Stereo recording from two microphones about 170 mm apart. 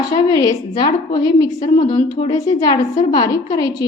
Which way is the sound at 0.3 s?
20° left (ahead or behind).